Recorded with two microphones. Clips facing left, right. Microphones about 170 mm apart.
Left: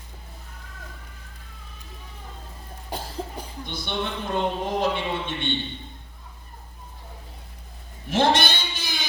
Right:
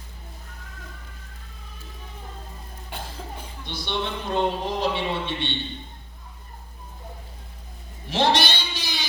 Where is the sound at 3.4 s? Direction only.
50° left (ahead or behind).